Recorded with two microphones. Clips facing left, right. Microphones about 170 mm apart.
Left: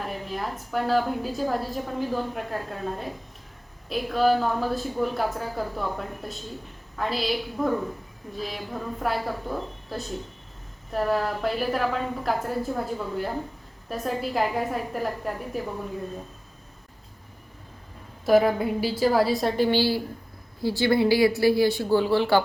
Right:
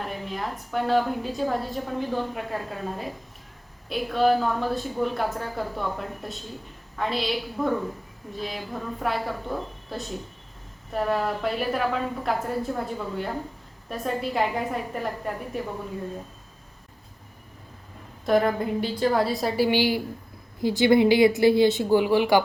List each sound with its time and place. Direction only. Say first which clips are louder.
0.3 s a woman's voice: even; centre (ahead or behind)
18.3 s a woman's voice: left 2 dB; 5° left (ahead or behind); by 22.4 s 15° right (ahead or behind)